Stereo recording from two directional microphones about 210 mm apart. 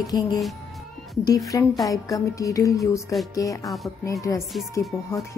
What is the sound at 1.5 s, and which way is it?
A woman's voice, 15° left (ahead or behind).